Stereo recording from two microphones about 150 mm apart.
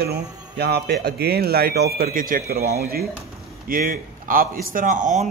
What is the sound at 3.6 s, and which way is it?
Speech, 70° right (ahead or behind).